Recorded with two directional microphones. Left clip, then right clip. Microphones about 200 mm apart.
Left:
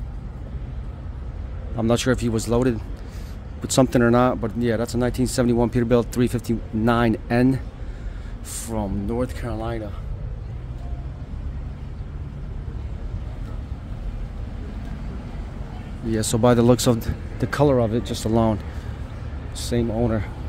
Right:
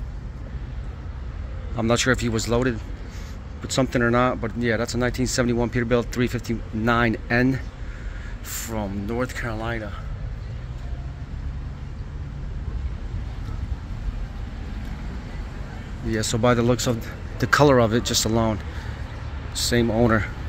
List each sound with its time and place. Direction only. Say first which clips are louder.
1.8 s speech: even; 20° left (ahead or behind)
3.6 s speech: left 4 dB; 35° left (ahead or behind); by 9.8 s 10° left (ahead or behind)
16.1 s speech: left 2 dB; 25° left (ahead or behind)
17.4 s speech: right 3 dB; 10° left (ahead or behind)
18.3 s speech: left 7 dB; 20° left (ahead or behind)
19.5 s speech: right 3 dB; 10° left (ahead or behind)
19.9 s speech: right 5 dB; 10° right (ahead or behind)